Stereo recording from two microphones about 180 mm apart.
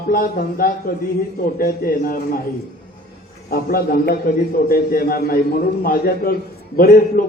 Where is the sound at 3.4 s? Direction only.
55° left (ahead or behind).